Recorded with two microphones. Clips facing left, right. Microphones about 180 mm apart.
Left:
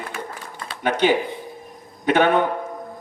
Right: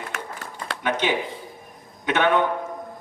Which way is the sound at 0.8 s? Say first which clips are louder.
Left 5 dB; 35° left (ahead or behind).